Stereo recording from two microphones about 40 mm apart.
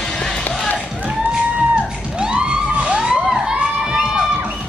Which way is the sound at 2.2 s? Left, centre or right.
Right.